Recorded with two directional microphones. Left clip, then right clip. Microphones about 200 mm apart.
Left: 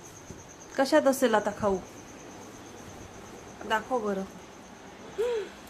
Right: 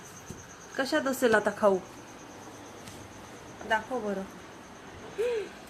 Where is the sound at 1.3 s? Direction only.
5° right (ahead or behind).